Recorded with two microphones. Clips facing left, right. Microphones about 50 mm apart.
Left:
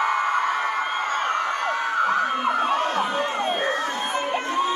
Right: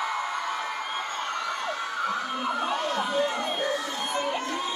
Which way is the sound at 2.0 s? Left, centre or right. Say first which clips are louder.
Left 7 dB; left.